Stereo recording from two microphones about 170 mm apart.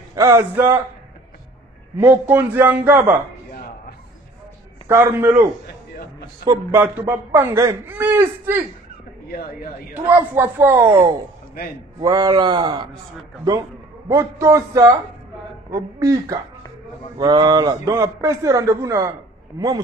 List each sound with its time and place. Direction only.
0.1 s a man's voice: 20° right (ahead or behind)
2.0 s a man's voice: 10° right (ahead or behind)
4.8 s a man's voice: 15° right (ahead or behind)
10.0 s a man's voice: 10° right (ahead or behind)